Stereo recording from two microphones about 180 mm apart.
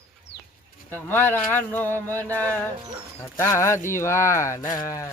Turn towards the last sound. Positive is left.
turn(degrees=15)  # may be behind; listen again after turning